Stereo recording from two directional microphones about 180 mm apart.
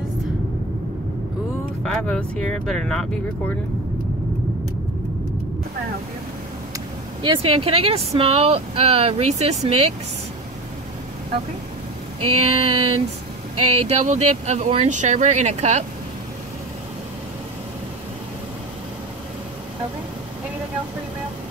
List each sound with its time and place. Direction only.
2.0 s speech: 5° left (ahead or behind)
7.2 s speech: 30° right (ahead or behind)
12.2 s speech: 30° right (ahead or behind)